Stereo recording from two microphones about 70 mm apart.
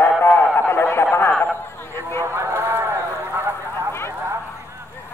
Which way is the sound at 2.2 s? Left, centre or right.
Right.